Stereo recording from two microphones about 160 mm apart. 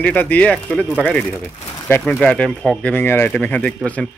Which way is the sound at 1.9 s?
10° left (ahead or behind).